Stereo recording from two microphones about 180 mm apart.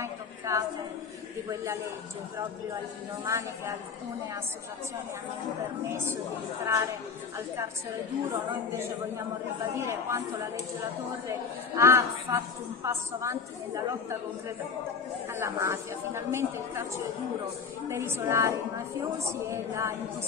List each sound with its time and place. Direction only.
0.0 s a sound: 15° right (ahead or behind)
1.5 s speech: 15° right (ahead or behind)
3.3 s speech: 15° right (ahead or behind)
6.6 s speech: 15° right (ahead or behind)
9.8 s speech: 15° right (ahead or behind)
11.2 s speech: 15° right (ahead or behind)
15.3 s speech: 15° right (ahead or behind)
17.8 s speech: 15° right (ahead or behind)